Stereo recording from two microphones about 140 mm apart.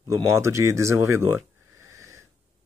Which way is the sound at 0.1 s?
20° right (ahead or behind).